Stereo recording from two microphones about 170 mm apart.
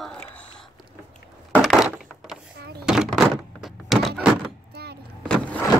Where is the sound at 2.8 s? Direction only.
5° right (ahead or behind).